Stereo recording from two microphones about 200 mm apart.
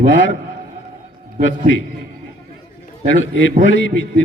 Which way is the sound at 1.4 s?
70° left (ahead or behind).